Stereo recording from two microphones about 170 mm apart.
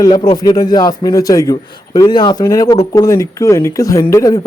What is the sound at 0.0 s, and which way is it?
A man's voice, 25° left (ahead or behind).